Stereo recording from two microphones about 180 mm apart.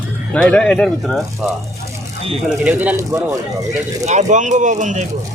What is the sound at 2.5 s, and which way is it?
Speech, 5° right (ahead or behind).